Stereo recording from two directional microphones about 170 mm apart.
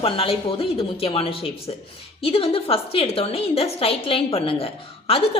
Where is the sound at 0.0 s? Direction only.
30° left (ahead or behind).